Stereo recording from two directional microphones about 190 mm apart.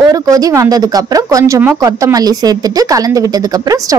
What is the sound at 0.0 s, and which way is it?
Speech, 20° right (ahead or behind).